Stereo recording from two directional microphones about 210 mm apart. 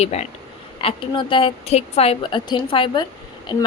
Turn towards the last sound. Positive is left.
turn(degrees=20)  # may be behind; listen again after turning